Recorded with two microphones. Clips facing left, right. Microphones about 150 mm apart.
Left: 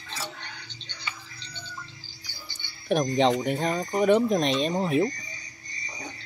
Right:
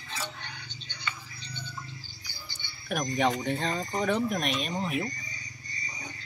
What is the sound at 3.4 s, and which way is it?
Speech, 15° left (ahead or behind).